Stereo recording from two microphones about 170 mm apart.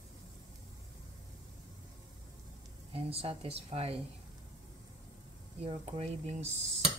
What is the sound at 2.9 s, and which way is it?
A woman's voice, 35° right (ahead or behind).